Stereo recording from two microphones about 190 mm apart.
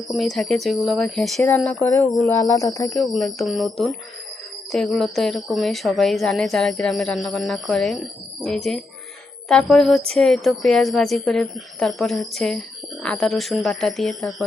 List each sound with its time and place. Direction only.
0.1 s a woman's voice: centre (ahead or behind)
2.3 s speech: 15° left (ahead or behind)
2.9 s a woman's voice: centre (ahead or behind)